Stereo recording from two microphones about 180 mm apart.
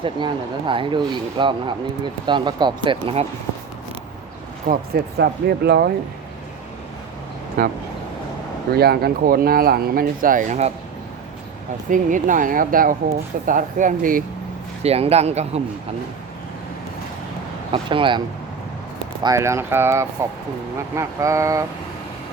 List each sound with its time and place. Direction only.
0.7 s speech: 25° right (ahead or behind)
4.7 s speech: 65° right (ahead or behind)
7.6 s speech: 55° right (ahead or behind)
11.9 s speech: 45° right (ahead or behind)
14.8 s a man's voice: 35° right (ahead or behind)
17.7 s speech: 30° right (ahead or behind)
19.2 s speech: 15° right (ahead or behind)